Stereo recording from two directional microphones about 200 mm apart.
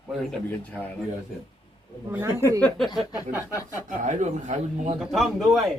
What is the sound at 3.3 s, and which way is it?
Speech, 10° right (ahead or behind).